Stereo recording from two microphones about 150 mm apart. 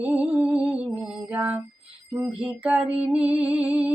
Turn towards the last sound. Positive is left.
turn(degrees=-10)  # may be behind; listen again after turning